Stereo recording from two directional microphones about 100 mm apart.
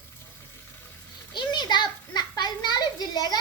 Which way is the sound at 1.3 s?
45° left (ahead or behind).